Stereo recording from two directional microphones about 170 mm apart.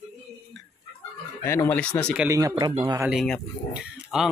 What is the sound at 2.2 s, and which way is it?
Speech, 20° right (ahead or behind).